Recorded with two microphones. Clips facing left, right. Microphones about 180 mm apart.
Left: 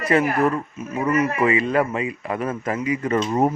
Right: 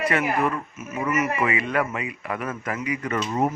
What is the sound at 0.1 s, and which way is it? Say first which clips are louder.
A man's voice: left 5 dB; 35° left (ahead or behind).